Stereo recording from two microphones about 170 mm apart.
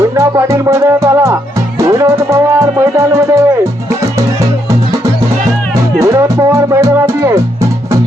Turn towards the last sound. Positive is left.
turn(degrees=-20)  # may be behind; listen again after turning